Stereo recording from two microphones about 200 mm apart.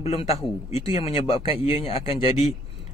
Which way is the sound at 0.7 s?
30° left (ahead or behind).